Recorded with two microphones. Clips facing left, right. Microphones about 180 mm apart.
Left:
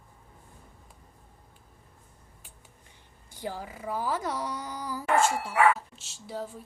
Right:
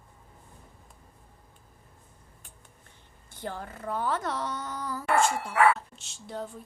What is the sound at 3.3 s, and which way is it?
Speech, 10° left (ahead or behind).